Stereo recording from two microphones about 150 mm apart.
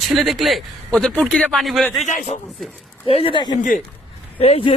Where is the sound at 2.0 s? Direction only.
50° left (ahead or behind).